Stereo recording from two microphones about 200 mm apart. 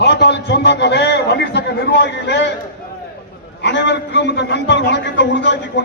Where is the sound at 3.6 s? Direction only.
60° left (ahead or behind).